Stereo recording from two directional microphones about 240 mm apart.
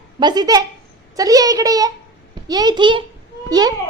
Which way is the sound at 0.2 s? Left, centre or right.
Centre.